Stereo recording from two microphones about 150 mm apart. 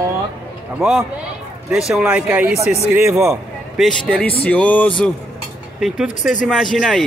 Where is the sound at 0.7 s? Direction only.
5° right (ahead or behind).